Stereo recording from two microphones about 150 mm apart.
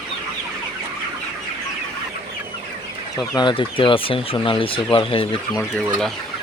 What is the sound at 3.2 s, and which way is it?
Speech, 30° left (ahead or behind).